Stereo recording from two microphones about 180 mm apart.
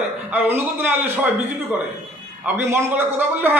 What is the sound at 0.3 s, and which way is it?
A man's voice, 10° right (ahead or behind).